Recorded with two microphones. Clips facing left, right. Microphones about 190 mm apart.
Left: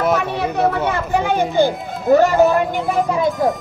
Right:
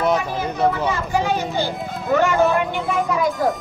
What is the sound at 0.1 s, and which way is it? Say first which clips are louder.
Speech: left 3 dB; 65° left (ahead or behind).